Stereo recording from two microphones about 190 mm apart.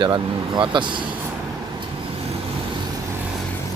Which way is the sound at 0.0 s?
25° right (ahead or behind).